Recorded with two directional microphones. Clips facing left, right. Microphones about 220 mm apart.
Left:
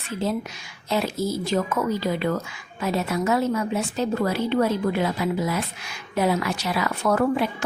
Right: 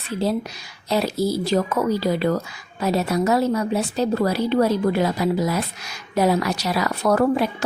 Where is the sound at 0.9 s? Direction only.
35° right (ahead or behind).